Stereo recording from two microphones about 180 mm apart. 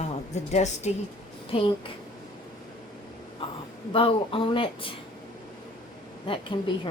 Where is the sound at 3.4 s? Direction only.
30° left (ahead or behind).